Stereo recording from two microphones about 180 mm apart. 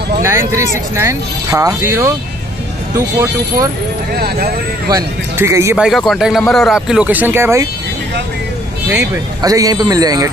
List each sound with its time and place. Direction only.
0.2 s speech: 15° right (ahead or behind)
3.2 s speech: 15° right (ahead or behind)
4.1 s speech: 55° right (ahead or behind)
4.9 s speech: 15° right (ahead or behind)
5.8 s speech: centre (ahead or behind)
8.9 s speech: 20° right (ahead or behind)